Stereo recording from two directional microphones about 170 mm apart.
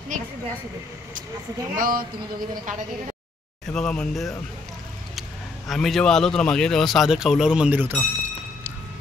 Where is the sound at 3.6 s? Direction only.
5° left (ahead or behind).